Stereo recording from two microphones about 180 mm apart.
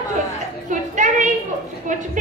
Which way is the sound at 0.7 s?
45° right (ahead or behind).